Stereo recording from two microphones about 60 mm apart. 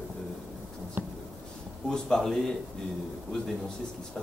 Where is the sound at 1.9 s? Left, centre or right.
Centre.